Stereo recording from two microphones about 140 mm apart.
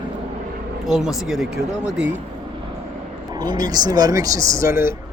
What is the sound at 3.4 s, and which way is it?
Speech, 30° right (ahead or behind).